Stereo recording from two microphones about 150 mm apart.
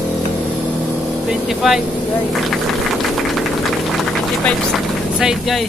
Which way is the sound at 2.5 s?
Centre (ahead or behind).